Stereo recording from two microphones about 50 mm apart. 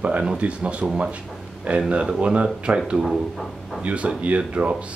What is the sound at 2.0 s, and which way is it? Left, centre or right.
Speech, centre.